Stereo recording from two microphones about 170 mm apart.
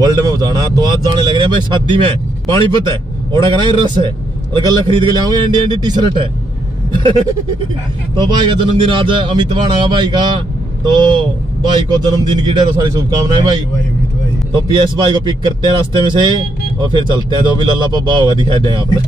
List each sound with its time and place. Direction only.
0.0 s a man's voice: 20° right (ahead or behind)
6.9 s a sound: 30° right (ahead or behind)
8.2 s a man's voice: 25° right (ahead or behind)
12.3 s a man's voice: 25° right (ahead or behind)